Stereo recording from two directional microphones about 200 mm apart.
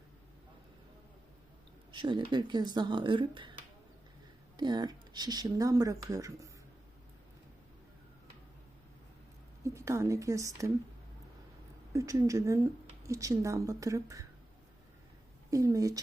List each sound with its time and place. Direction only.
1.9 s speech: 25° right (ahead or behind)
4.5 s speech: 20° right (ahead or behind)
9.6 s speech: 15° right (ahead or behind)
11.9 s speech: 15° right (ahead or behind)
15.4 s speech: 15° right (ahead or behind)